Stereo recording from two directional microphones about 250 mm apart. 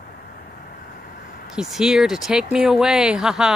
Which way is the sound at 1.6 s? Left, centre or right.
Centre.